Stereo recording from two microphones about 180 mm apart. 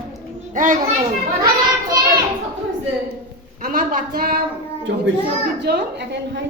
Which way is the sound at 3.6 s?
50° right (ahead or behind).